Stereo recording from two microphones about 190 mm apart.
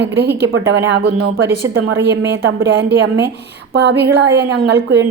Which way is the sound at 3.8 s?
60° right (ahead or behind).